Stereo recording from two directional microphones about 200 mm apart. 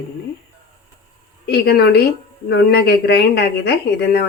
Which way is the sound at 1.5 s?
50° left (ahead or behind).